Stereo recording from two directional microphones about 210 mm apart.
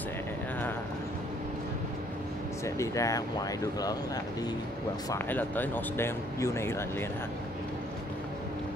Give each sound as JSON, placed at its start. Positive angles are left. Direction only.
{"t": 2.6, "sound": "speech", "side_deg": 15}
{"t": 5.1, "sound": "speech", "side_deg": 10}